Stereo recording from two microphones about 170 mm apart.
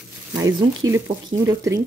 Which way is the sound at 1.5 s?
20° right (ahead or behind).